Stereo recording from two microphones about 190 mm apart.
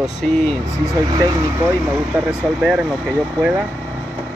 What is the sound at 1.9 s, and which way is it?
Speech, 5° right (ahead or behind).